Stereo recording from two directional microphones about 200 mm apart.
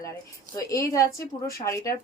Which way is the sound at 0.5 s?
15° left (ahead or behind).